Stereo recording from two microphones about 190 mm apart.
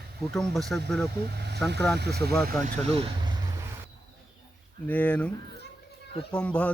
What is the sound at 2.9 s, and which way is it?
Speech, 30° right (ahead or behind).